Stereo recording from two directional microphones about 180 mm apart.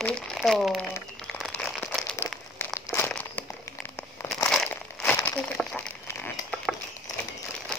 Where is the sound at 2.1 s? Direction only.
15° left (ahead or behind).